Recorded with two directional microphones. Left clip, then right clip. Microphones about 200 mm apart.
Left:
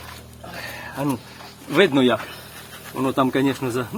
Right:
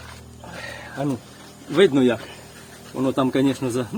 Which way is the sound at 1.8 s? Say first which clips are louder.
Even; centre (ahead or behind).